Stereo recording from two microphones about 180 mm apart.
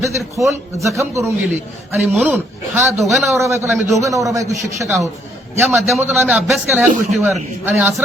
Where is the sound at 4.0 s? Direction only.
20° right (ahead or behind).